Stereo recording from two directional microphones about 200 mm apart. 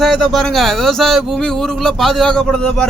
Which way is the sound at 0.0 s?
Centre (ahead or behind).